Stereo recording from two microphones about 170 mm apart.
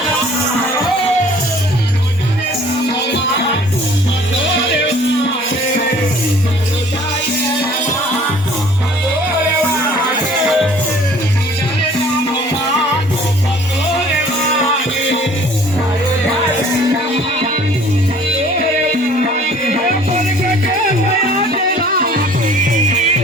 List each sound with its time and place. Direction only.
19.5 s music: 45° right (ahead or behind)
21.5 s music: 60° right (ahead or behind)